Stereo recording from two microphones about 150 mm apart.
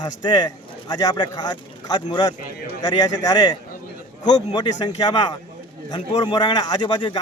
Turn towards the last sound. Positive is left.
turn(degrees=30)  # may be behind; listen again after turning